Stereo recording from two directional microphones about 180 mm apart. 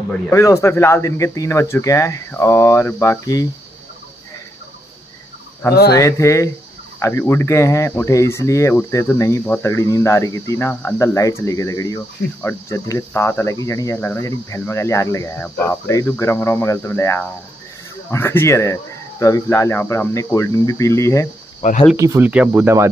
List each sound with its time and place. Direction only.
0.3 s speech: 15° left (ahead or behind)
5.7 s speech: 60° left (ahead or behind)
5.9 s speech: 15° left (ahead or behind)
21.5 s speech: 40° left (ahead or behind)
21.9 s speech: 15° right (ahead or behind)